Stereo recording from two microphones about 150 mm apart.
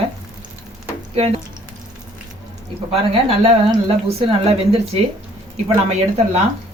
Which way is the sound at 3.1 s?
45° right (ahead or behind).